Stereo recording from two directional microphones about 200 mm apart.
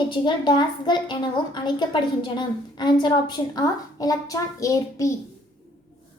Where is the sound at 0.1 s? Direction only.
20° left (ahead or behind).